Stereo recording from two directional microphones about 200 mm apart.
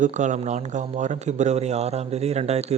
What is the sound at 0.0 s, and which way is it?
Speech, 40° right (ahead or behind).